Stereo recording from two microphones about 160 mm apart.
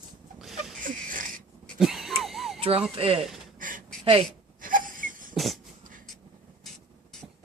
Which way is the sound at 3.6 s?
60° right (ahead or behind).